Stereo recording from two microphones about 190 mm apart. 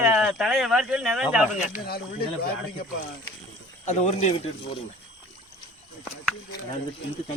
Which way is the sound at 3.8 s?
35° left (ahead or behind).